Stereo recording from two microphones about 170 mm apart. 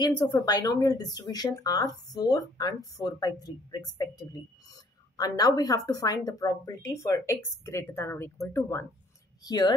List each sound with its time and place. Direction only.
0.0 s speech: 25° left (ahead or behind)